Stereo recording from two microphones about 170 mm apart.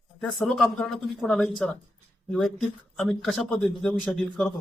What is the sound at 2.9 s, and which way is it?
Speech, centre (ahead or behind).